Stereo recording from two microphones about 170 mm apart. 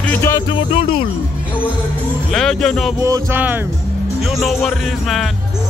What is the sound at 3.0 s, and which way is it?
Music, 15° right (ahead or behind).